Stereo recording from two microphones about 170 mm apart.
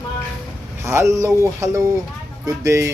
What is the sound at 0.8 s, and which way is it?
Speech, 15° right (ahead or behind).